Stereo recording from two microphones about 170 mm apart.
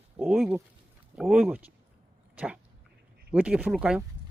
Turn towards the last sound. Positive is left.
turn(degrees=-5)  # may be behind; listen again after turning